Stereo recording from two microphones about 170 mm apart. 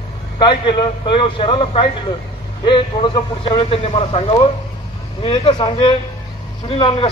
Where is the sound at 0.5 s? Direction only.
25° left (ahead or behind).